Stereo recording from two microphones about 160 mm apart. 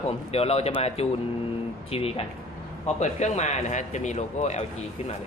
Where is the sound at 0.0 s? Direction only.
40° left (ahead or behind).